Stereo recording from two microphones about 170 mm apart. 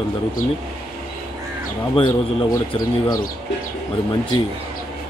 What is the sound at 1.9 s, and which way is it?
A man's voice, 25° left (ahead or behind).